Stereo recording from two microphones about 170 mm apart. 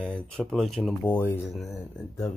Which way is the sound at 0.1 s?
5° left (ahead or behind).